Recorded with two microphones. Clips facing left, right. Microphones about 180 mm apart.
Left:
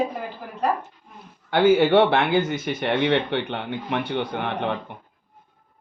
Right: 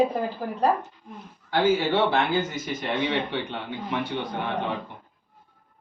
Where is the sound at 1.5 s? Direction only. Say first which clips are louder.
Left 6 dB; 65° left (ahead or behind).